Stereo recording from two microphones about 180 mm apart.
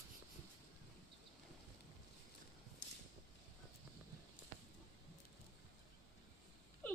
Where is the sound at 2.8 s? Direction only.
85° left.